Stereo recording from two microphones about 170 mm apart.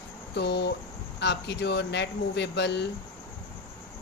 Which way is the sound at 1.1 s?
85° left.